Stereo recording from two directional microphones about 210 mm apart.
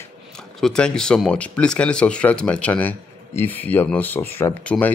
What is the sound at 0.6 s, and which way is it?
Speech, 5° left (ahead or behind).